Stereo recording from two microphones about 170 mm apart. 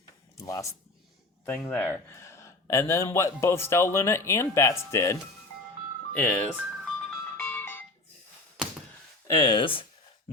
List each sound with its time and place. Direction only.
0.3 s a sound: 20° left (ahead or behind)
1.5 s a man's voice: 10° left (ahead or behind)
6.1 s a man's voice: 5° left (ahead or behind)
6.6 s music: centre (ahead or behind)
7.4 s music: 10° left (ahead or behind)
9.2 s speech: 20° left (ahead or behind)